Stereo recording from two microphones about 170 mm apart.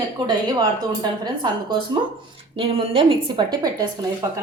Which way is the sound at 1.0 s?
25° right (ahead or behind).